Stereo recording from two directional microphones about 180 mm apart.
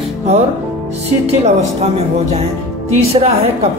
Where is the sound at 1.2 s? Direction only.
35° right (ahead or behind).